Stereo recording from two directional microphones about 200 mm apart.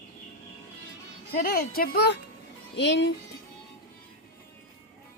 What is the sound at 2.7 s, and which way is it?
Speech, 60° left (ahead or behind).